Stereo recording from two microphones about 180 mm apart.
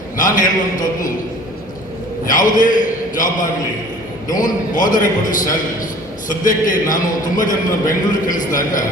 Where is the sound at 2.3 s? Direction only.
45° left (ahead or behind).